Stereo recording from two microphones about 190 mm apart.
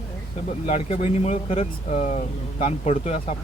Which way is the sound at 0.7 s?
35° left (ahead or behind).